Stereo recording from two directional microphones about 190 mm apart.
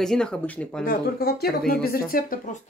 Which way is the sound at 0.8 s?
50° left (ahead or behind).